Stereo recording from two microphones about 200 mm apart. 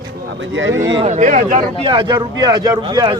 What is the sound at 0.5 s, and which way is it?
Speech, 70° right (ahead or behind).